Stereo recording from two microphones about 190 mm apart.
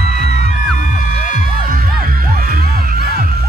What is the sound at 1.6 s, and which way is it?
Music, 50° right (ahead or behind).